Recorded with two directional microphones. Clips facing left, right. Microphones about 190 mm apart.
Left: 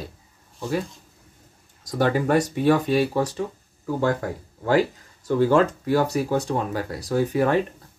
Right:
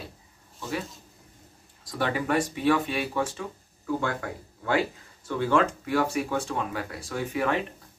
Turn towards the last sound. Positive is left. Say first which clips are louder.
# left 7 dB
turn(degrees=40)  # may be behind; listen again after turning